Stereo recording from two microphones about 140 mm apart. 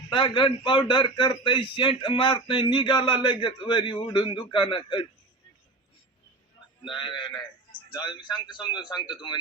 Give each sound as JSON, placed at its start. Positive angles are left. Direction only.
{"t": 0.1, "sound": "a man's voice", "side_deg": 35}
{"t": 6.9, "sound": "a man's voice", "side_deg": 35}